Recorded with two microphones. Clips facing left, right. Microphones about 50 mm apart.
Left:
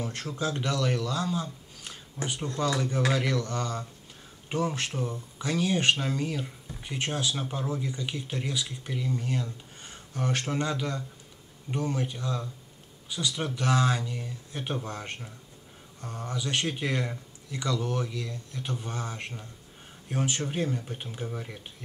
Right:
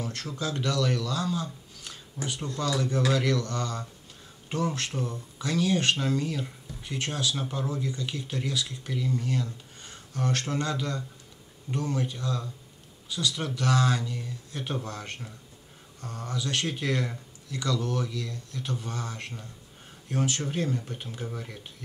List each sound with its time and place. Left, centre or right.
0.0 s speech: left
7.3 s speech: centre